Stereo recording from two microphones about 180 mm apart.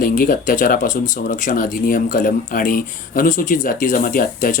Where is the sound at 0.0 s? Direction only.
55° left (ahead or behind).